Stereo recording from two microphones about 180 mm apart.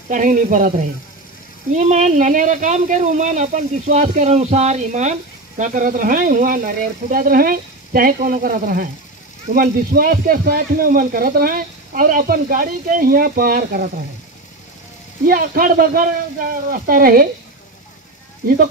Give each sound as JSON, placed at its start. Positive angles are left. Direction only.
{"t": 0.1, "sound": "speech", "side_deg": -45}
{"t": 15.2, "sound": "speech", "side_deg": -50}